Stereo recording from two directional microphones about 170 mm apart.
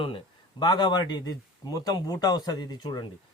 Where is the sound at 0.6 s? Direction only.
25° left (ahead or behind).